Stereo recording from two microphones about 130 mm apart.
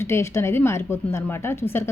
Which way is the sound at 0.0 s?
20° left (ahead or behind).